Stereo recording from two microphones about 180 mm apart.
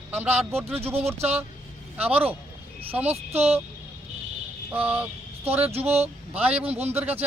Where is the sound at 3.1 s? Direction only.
35° right (ahead or behind).